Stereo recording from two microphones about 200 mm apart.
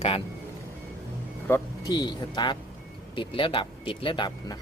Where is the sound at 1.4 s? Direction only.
15° left (ahead or behind).